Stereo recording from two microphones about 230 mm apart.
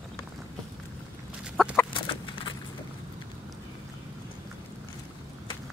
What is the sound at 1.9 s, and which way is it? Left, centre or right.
Horse, left.